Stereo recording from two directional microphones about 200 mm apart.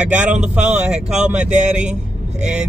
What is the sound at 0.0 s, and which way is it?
Speech, 5° right (ahead or behind).